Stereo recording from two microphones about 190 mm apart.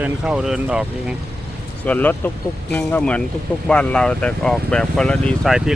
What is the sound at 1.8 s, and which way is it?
Speech, 10° left (ahead or behind).